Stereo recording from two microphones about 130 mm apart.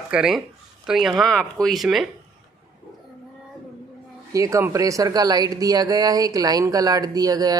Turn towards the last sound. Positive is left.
turn(degrees=-30)  # may be behind; listen again after turning